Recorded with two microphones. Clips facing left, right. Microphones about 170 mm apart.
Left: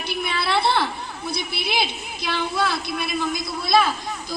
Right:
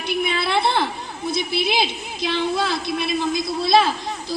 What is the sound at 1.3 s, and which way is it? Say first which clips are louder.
A woman's voice: right 6 dB; 20° right (ahead or behind).